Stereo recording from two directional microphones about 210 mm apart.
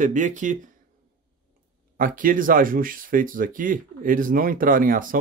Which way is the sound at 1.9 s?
40° right (ahead or behind).